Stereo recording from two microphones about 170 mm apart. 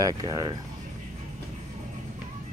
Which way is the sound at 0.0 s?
20° right (ahead or behind).